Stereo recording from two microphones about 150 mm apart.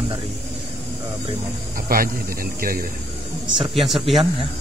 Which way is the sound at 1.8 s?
75° right (ahead or behind).